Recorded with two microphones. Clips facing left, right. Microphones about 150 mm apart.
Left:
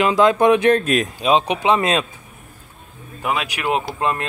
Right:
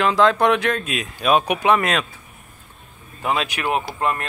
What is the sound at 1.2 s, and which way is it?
Speech, 20° left (ahead or behind).